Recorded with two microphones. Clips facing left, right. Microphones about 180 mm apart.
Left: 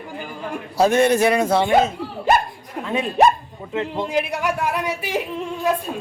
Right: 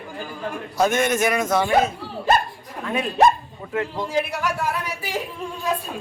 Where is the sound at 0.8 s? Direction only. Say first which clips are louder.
Left 4 dB; 30° left (ahead or behind).